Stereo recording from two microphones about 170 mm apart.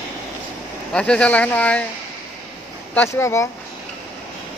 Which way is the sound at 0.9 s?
5° left (ahead or behind).